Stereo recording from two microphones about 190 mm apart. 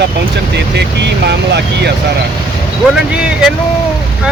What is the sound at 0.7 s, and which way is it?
Speech, 60° right (ahead or behind).